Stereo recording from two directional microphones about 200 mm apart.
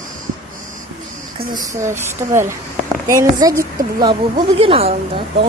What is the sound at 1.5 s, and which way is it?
Speech, 15° right (ahead or behind).